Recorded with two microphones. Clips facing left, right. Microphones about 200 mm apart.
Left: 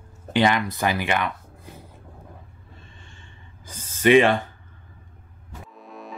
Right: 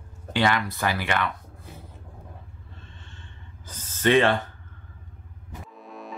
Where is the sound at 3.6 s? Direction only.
10° left (ahead or behind).